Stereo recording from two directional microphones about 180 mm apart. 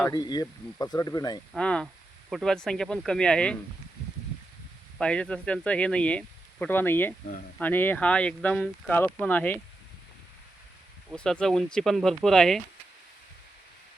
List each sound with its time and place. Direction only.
0.0 s speech: 20° left (ahead or behind)
1.5 s speech: 5° left (ahead or behind)
4.9 s speech: 5° left (ahead or behind)
11.1 s speech: 5° left (ahead or behind)